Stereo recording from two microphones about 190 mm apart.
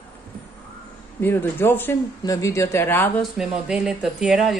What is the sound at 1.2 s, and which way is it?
Speech, 10° left (ahead or behind).